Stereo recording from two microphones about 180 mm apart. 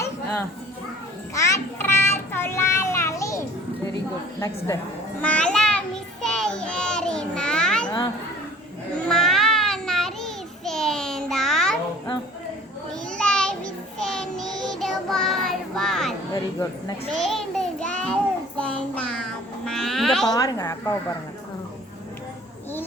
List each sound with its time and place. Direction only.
1.3 s child singing: 15° left (ahead or behind)
4.4 s a woman's voice: 15° left (ahead or behind)
5.2 s child singing: 5° left (ahead or behind)
9.0 s child singing: centre (ahead or behind)
13.1 s child singing: 5° left (ahead or behind)
16.3 s a sound: 20° left (ahead or behind)
17.1 s child singing: centre (ahead or behind)
19.6 s a sound: centre (ahead or behind)
20.3 s a woman's voice: 20° left (ahead or behind)